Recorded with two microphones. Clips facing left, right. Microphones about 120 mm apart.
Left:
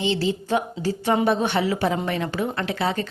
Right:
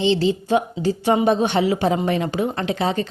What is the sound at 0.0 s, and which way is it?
A woman's voice, 25° right (ahead or behind).